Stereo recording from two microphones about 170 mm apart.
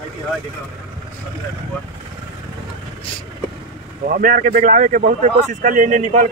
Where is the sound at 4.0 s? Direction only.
55° right (ahead or behind).